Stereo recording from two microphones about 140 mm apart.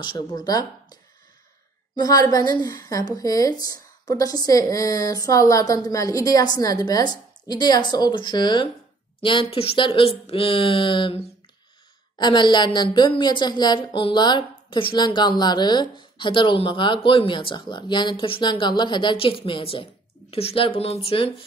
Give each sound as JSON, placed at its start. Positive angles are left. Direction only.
{"t": 0.0, "sound": "a woman's voice", "side_deg": 30}
{"t": 2.0, "sound": "a woman's voice", "side_deg": 25}